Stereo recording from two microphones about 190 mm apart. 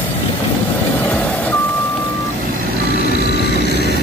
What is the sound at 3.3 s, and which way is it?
Vehicle, 60° left (ahead or behind).